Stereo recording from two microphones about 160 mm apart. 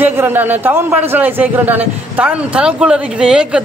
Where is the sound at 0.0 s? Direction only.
15° right (ahead or behind).